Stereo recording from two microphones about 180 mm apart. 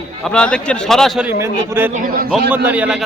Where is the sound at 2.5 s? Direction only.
10° right (ahead or behind).